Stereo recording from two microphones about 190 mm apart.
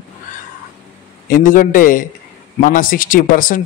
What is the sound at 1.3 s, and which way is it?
A man's voice, 45° left (ahead or behind).